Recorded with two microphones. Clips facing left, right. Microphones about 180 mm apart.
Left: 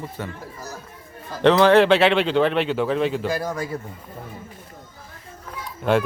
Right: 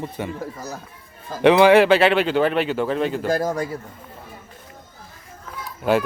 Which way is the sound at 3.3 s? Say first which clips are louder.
Right 4 dB; 45° right (ahead or behind).